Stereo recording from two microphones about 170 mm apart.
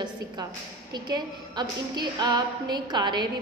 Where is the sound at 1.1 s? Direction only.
25° right (ahead or behind).